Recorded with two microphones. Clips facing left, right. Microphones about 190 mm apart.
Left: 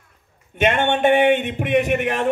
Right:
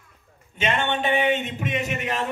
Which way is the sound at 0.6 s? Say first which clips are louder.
Left 7 dB; 55° left (ahead or behind).